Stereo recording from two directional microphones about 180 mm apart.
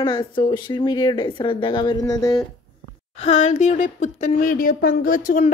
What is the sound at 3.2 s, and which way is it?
Speech, 40° left (ahead or behind).